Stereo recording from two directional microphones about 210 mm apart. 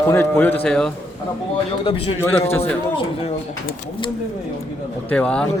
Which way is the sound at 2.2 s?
10° left (ahead or behind).